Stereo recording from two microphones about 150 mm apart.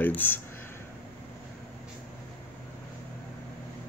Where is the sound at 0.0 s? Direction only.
15° left (ahead or behind).